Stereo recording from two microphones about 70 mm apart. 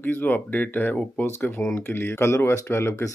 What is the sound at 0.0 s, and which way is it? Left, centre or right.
Speech, left.